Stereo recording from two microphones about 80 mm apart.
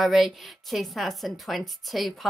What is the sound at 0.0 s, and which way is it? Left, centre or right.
A woman's voice, centre.